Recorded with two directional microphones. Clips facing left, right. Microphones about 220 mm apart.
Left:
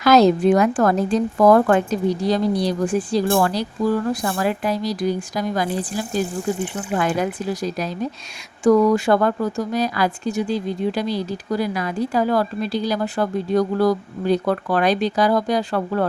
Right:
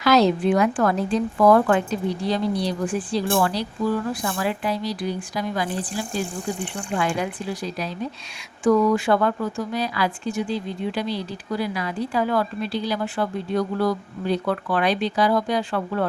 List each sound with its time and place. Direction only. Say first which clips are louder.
0.0 s a woman's voice: left 4 dB; 45° left (ahead or behind)